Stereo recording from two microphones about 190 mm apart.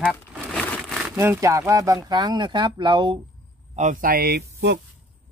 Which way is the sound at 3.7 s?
40° right (ahead or behind).